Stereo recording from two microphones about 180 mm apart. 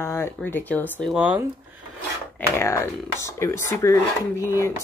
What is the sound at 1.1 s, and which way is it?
Speech, 10° right (ahead or behind).